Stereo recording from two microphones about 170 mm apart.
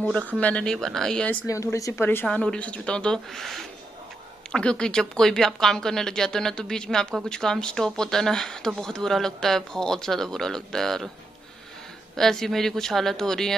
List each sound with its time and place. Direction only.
0.4 s a woman's voice: 5° left (ahead or behind)
1.5 s a woman's voice: 20° left (ahead or behind); by 11.1 s centre (ahead or behind)
12.2 s a woman's voice: centre (ahead or behind)